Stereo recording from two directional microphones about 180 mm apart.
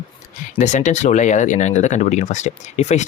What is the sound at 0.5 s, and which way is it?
Speech, 40° left (ahead or behind).